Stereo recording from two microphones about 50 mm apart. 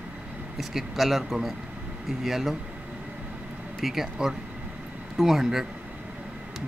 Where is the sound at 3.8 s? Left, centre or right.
Centre.